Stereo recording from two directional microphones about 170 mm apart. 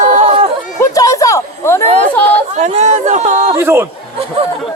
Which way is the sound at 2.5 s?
40° right (ahead or behind).